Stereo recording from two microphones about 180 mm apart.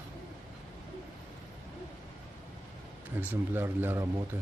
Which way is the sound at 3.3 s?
10° right (ahead or behind).